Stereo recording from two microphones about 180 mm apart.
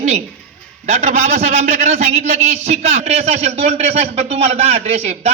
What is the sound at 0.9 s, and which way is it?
A man's voice, 35° right (ahead or behind).